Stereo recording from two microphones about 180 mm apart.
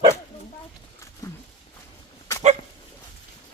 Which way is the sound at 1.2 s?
15° left (ahead or behind).